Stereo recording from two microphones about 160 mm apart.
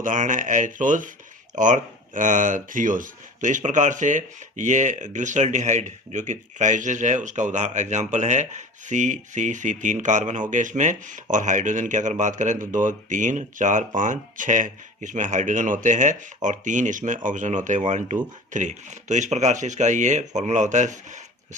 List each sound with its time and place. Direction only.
0.0 s speech: 55° right (ahead or behind)